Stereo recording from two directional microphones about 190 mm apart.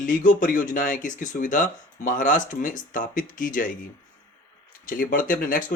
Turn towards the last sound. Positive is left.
turn(degrees=45)  # may be behind; listen again after turning